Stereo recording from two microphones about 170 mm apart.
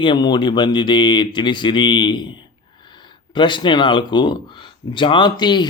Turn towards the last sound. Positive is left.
turn(degrees=25)  # may be behind; listen again after turning